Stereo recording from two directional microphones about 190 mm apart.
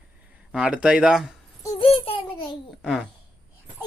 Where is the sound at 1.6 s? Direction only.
25° left (ahead or behind).